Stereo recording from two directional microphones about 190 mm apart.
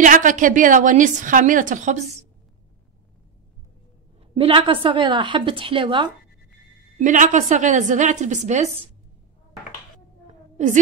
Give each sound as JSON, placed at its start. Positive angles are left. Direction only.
{"t": 0.0, "sound": "a woman's voice", "side_deg": -45}
{"t": 4.4, "sound": "a woman's voice", "side_deg": -30}
{"t": 7.0, "sound": "a woman's voice", "side_deg": -40}